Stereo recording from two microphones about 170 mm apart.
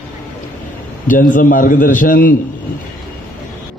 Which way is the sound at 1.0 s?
50° left (ahead or behind).